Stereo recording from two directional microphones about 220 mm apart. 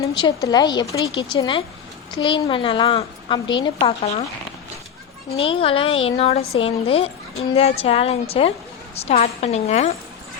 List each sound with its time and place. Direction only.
0.1 s a woman's voice: 20° left (ahead or behind)
5.3 s a woman's voice: 25° left (ahead or behind)